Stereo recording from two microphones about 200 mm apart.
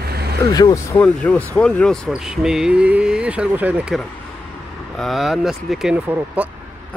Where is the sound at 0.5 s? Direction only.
20° left (ahead or behind).